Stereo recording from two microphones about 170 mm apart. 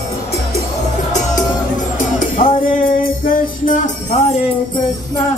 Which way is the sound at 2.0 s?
50° left (ahead or behind).